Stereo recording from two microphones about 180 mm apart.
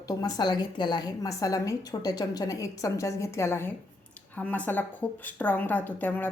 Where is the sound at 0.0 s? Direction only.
20° left (ahead or behind).